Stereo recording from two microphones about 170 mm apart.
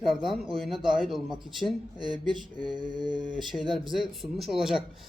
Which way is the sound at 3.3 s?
Centre (ahead or behind).